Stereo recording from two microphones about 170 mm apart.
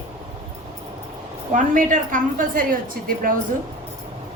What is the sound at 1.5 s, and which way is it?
A woman's voice, 50° right (ahead or behind).